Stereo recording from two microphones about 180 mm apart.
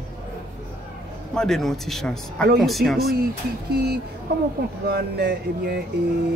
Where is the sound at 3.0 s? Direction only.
60° right (ahead or behind).